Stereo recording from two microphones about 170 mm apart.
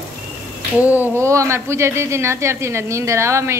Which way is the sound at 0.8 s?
10° right (ahead or behind).